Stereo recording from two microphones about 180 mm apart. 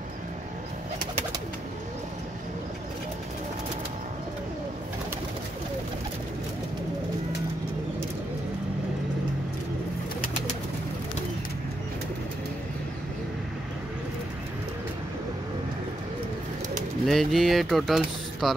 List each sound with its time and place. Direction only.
17.0 s speech: centre (ahead or behind)